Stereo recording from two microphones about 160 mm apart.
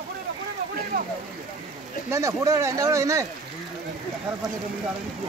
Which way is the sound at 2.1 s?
20° right (ahead or behind).